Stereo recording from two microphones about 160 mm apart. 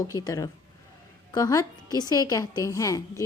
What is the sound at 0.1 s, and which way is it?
A woman's voice, 25° left (ahead or behind).